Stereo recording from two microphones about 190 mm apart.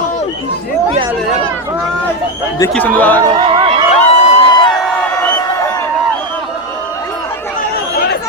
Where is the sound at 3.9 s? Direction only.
35° left (ahead or behind).